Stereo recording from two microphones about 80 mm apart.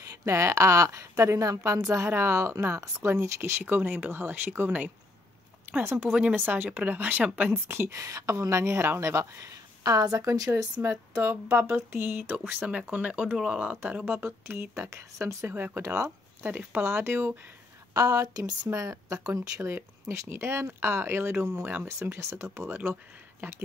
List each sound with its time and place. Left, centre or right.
0.2 s a woman's voice: right; by 7.5 s centre
7.6 s a woman's voice: right
10.8 s speech: right
14.9 s speech: right
15.8 s a woman's voice: right
16.4 s speech: right
17.9 s a woman's voice: right
19.6 s a woman's voice: right